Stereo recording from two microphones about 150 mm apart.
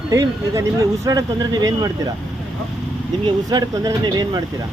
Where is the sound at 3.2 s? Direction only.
25° right (ahead or behind).